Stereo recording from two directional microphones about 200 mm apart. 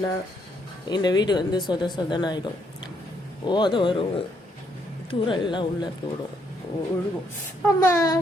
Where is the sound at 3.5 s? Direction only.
20° left (ahead or behind).